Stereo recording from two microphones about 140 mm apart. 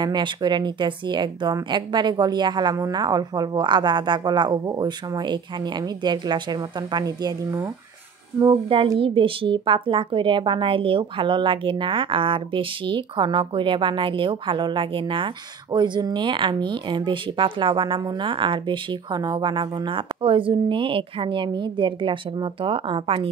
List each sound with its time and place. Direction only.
0.0 s speech: 30° right (ahead or behind)